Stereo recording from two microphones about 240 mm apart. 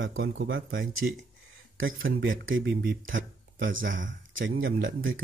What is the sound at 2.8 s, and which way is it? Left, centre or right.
A man's voice, right.